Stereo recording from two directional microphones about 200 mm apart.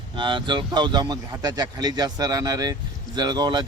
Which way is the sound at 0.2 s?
25° right (ahead or behind).